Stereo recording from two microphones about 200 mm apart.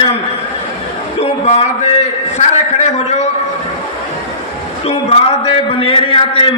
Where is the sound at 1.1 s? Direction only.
35° left (ahead or behind).